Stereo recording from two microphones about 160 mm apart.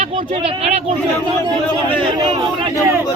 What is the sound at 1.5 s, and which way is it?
Speech, 5° left (ahead or behind).